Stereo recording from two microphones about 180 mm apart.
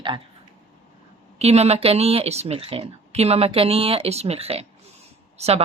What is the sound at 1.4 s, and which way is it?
Speech, 35° right (ahead or behind).